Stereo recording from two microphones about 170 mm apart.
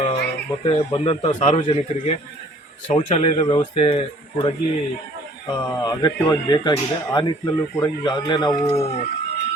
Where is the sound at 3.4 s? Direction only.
25° left (ahead or behind).